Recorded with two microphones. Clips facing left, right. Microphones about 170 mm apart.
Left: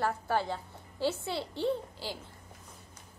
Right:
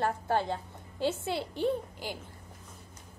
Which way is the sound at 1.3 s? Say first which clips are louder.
Right 2 dB; 20° right (ahead or behind).